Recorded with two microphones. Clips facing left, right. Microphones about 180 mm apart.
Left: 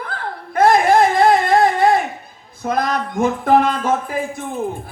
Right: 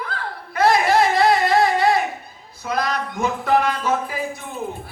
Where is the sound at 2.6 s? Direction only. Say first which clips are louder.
Left 4 dB; 50° left (ahead or behind).